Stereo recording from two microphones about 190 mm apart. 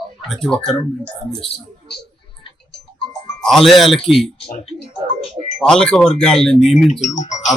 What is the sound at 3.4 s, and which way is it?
Speech, centre (ahead or behind).